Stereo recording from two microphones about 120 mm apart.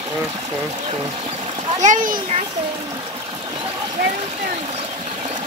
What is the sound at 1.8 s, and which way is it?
Speech, 90° right.